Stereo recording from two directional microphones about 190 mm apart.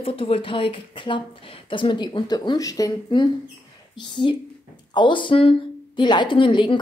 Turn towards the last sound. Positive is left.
turn(degrees=25)  # may be behind; listen again after turning